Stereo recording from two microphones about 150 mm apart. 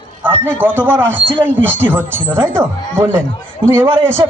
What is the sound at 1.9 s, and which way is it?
A man's voice, 15° right (ahead or behind).